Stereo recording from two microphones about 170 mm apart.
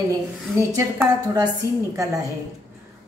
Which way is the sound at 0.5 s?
20° right (ahead or behind).